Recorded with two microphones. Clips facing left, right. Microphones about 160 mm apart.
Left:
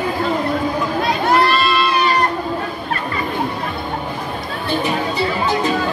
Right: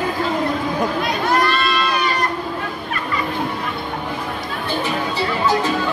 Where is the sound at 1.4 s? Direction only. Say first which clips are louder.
Left 3 dB; 30° left (ahead or behind).